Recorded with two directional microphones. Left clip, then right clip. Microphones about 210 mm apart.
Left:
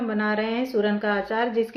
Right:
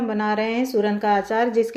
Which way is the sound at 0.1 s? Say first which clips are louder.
Right 2 dB; 25° right (ahead or behind).